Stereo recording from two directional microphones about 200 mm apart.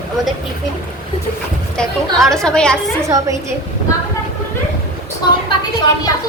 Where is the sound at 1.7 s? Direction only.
Centre (ahead or behind).